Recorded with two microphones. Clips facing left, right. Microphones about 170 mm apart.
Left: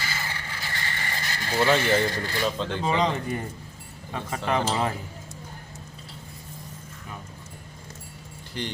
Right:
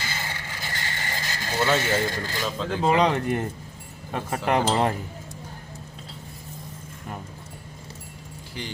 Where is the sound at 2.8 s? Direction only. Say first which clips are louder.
Right 5 dB; 75° right (ahead or behind).